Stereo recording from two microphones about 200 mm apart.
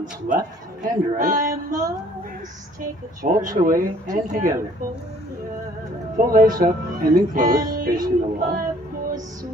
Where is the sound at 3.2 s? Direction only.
40° right (ahead or behind).